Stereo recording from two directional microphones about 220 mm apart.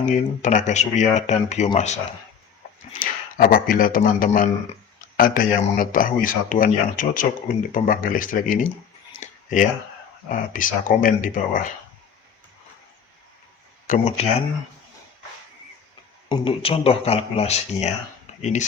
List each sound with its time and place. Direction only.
0.0 s speech: 35° left (ahead or behind)
9.2 s a sound: 35° left (ahead or behind)
10.2 s speech: 35° left (ahead or behind)
13.8 s speech: 35° left (ahead or behind)
16.3 s speech: 25° left (ahead or behind)
18.3 s a sound: 30° left (ahead or behind)